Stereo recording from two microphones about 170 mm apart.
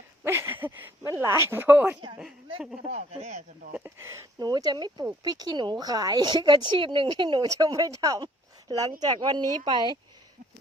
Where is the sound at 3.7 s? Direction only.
15° right (ahead or behind).